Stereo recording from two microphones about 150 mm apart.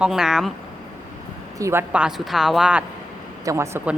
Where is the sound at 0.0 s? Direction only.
5° right (ahead or behind).